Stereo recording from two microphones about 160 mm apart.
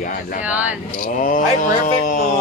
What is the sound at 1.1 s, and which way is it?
Speech, 55° left (ahead or behind).